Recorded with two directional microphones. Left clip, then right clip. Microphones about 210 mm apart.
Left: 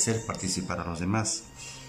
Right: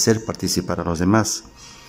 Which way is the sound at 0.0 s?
30° right (ahead or behind).